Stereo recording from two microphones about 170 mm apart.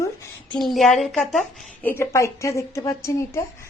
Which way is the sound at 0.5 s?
Centre (ahead or behind).